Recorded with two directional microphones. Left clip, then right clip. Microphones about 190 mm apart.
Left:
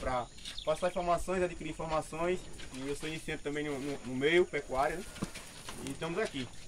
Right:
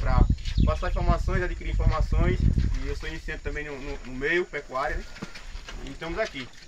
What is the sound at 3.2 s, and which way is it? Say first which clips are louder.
Speech: right 2 dB; 5° right (ahead or behind).